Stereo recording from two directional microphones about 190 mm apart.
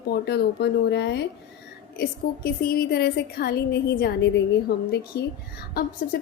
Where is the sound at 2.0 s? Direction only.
50° left (ahead or behind).